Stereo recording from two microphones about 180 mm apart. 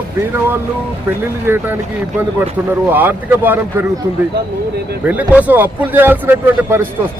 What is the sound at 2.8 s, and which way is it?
Speech, 10° right (ahead or behind).